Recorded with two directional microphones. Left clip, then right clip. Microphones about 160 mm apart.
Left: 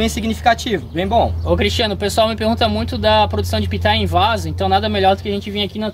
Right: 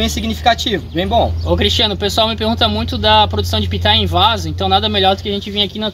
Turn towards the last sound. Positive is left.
turn(degrees=15)  # may be behind; listen again after turning